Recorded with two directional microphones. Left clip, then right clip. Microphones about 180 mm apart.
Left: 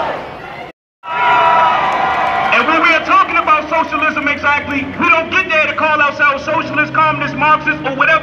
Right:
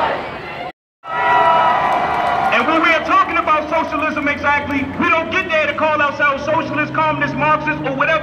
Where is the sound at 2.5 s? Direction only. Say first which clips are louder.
Left 4 dB; 10° right (ahead or behind).